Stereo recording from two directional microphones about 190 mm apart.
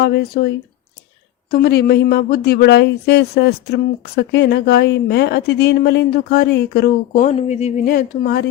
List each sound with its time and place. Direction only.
0.0 s speech: 55° left (ahead or behind); by 7.7 s 35° left (ahead or behind)
7.9 s speech: 50° left (ahead or behind)